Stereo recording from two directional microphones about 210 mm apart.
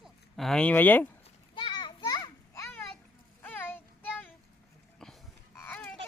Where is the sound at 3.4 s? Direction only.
10° left (ahead or behind).